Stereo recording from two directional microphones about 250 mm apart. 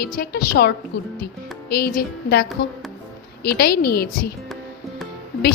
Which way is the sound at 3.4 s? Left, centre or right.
Left.